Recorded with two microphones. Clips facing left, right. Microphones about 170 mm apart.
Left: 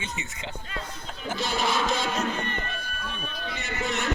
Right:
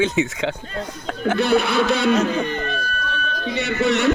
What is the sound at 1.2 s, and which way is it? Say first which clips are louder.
A man's voice: right 10 dB; 60° right (ahead or behind).